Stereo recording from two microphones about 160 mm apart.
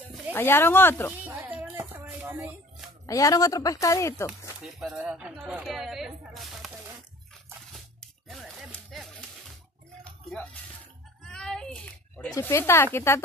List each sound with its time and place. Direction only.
0.3 s speech: 15° left (ahead or behind)
1.1 s music: 10° right (ahead or behind)
3.1 s a woman's voice: 20° left (ahead or behind)
4.3 s speech: 5° right (ahead or behind)
8.9 s music: centre (ahead or behind)
11.3 s a sound: 5° left (ahead or behind)
12.4 s speech: 15° left (ahead or behind)